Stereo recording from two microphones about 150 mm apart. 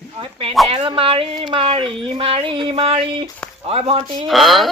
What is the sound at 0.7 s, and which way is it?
Speech, 40° right (ahead or behind).